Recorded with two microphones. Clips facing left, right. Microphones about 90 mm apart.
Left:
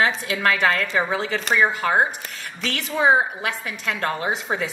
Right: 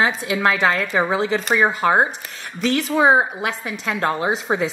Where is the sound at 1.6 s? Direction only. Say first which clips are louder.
Right 2 dB; 25° right (ahead or behind).